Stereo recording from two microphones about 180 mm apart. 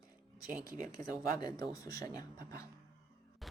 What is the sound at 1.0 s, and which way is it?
A man's voice, 20° left (ahead or behind).